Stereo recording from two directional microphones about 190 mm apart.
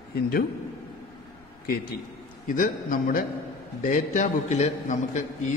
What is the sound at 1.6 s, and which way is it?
A man's voice, 50° left (ahead or behind).